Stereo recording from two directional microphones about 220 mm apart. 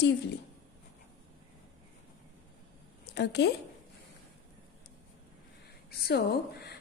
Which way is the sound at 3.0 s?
50° left (ahead or behind).